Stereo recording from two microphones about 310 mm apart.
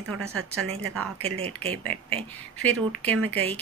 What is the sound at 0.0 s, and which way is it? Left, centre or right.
Speech, right.